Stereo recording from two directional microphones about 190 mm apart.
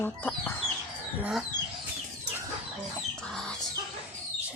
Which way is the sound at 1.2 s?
Centre (ahead or behind).